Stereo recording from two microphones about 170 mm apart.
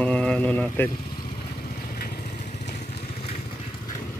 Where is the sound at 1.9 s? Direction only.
60° left (ahead or behind); by 3.4 s 35° left (ahead or behind).